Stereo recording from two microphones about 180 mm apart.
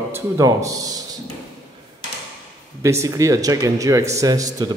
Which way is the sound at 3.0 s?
15° right (ahead or behind).